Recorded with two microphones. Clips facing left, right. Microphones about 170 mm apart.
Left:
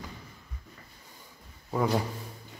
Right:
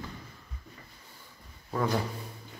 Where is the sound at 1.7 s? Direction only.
15° left (ahead or behind).